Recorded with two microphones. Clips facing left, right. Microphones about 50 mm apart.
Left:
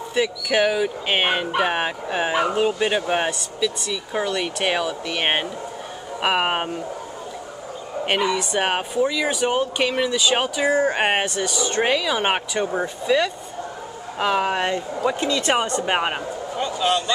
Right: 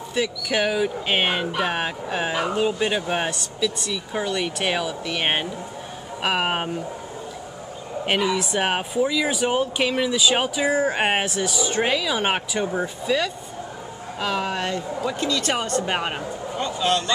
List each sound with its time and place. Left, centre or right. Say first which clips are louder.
0.1 s speech: left 3 dB; centre
8.0 s speech: left 1 dB; centre
14.1 s a woman's voice: left 4 dB; left
16.5 s a man's voice: left 1 dB; centre